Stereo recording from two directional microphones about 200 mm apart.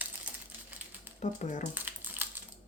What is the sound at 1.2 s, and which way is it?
Speech, 40° left (ahead or behind).